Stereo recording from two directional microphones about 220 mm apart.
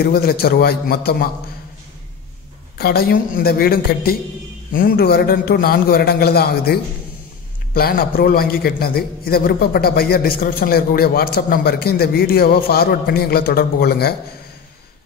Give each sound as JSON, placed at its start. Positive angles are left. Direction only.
{"t": 0.0, "sound": "a man's voice", "side_deg": 45}
{"t": 2.8, "sound": "a man's voice", "side_deg": 45}